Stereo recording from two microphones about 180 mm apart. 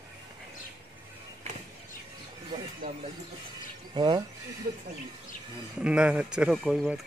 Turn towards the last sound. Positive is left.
turn(degrees=-5)  # may be behind; listen again after turning